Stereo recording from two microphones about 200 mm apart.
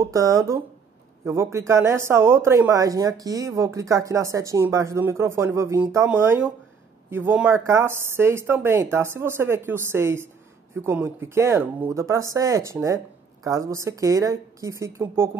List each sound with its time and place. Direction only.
0.0 s speech: 15° right (ahead or behind)